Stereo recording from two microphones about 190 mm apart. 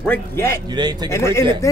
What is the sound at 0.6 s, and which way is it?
Speech, 20° right (ahead or behind).